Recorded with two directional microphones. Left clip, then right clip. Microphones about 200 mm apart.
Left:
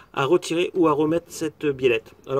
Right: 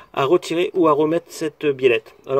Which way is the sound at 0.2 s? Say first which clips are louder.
Right 3 dB; 25° left (ahead or behind).